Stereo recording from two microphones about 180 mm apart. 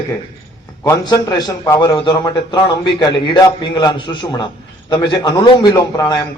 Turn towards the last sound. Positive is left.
turn(degrees=20)  # may be behind; listen again after turning